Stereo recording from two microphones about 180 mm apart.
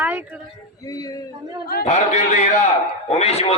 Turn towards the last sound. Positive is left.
turn(degrees=35)  # may be behind; listen again after turning